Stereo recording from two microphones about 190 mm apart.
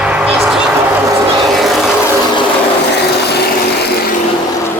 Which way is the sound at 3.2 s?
60° left (ahead or behind).